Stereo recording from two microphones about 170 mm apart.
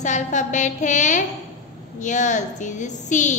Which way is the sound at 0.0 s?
45° left (ahead or behind).